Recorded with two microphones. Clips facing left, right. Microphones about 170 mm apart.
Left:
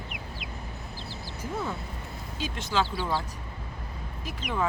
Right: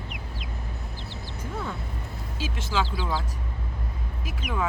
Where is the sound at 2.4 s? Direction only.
5° right (ahead or behind).